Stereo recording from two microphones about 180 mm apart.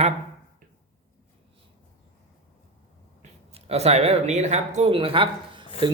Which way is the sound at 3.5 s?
35° right (ahead or behind).